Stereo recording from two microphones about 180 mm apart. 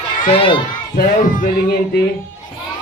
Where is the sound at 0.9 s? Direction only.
50° left (ahead or behind).